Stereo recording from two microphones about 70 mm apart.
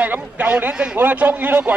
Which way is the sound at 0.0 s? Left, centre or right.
Right.